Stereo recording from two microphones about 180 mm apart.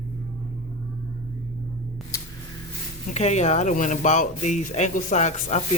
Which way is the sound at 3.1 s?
40° left (ahead or behind).